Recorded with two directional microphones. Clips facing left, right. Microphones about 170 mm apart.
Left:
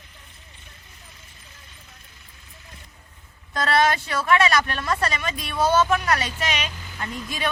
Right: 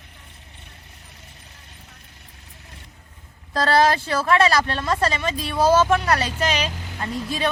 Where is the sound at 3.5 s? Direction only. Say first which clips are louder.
Right 3 dB; 30° right (ahead or behind).